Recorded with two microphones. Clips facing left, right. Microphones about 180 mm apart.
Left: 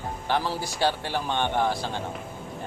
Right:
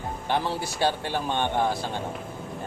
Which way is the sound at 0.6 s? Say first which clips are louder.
Even; 20° right (ahead or behind).